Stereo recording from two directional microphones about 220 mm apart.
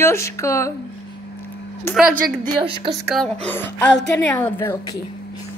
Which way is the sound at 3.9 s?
50° left (ahead or behind).